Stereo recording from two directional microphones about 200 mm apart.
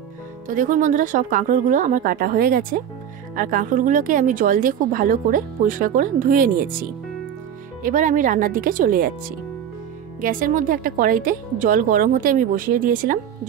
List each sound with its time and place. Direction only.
0.5 s a woman's voice: 40° right (ahead or behind)
10.2 s a woman's voice: 45° right (ahead or behind)